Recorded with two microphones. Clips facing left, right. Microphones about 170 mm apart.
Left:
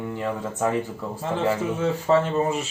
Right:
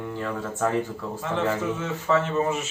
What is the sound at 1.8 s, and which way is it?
Speech, 35° left (ahead or behind).